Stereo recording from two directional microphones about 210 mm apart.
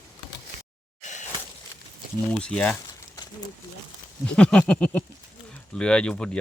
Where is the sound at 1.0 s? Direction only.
35° left (ahead or behind).